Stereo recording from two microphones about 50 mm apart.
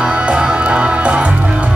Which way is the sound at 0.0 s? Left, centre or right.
Right.